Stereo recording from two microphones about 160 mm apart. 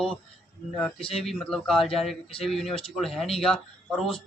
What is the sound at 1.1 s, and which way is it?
Speech, centre (ahead or behind).